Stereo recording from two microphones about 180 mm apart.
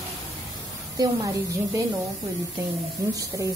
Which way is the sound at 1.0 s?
20° right (ahead or behind).